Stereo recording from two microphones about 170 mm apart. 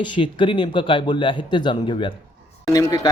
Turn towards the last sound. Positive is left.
turn(degrees=20)  # may be behind; listen again after turning